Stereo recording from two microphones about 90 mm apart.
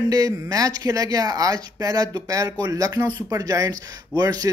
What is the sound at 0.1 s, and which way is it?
Speech, 45° right (ahead or behind).